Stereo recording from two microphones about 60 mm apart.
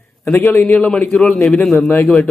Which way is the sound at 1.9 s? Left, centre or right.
Left.